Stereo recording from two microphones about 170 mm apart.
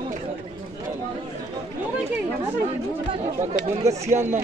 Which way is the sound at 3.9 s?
40° right (ahead or behind).